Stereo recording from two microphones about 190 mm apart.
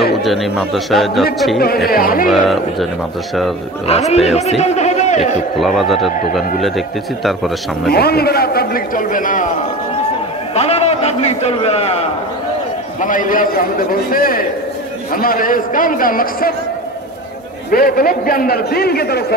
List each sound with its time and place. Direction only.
0.2 s a man's voice: centre (ahead or behind)
1.9 s a man's voice: 50° left (ahead or behind)
2.3 s a man's voice: centre (ahead or behind)
3.8 s a man's voice: 35° left (ahead or behind)
5.6 s a man's voice: centre (ahead or behind)
7.9 s a man's voice: 55° left (ahead or behind)
10.5 s a man's voice: 35° left (ahead or behind)
13.0 s a man's voice: 45° left (ahead or behind)
17.6 s a man's voice: 50° left (ahead or behind)